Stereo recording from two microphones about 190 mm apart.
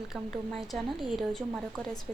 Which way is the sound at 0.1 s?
Centre (ahead or behind).